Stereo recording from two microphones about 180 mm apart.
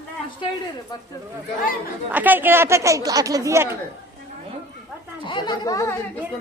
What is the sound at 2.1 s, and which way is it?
Speech, 10° right (ahead or behind).